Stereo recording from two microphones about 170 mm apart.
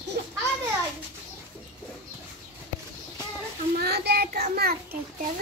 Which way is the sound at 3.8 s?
70° right (ahead or behind).